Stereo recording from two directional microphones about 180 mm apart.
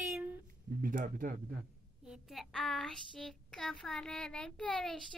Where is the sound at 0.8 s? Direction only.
50° right (ahead or behind).